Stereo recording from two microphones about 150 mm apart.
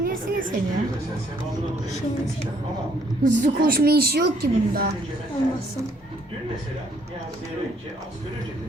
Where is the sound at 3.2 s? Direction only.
65° right (ahead or behind); by 4.8 s 90° right.